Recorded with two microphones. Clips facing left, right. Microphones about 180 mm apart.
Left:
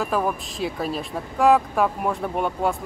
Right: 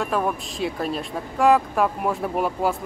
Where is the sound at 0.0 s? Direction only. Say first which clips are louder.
Even; centre (ahead or behind).